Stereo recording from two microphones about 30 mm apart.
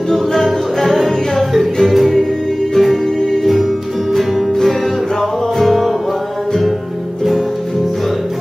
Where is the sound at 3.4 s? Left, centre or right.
Centre.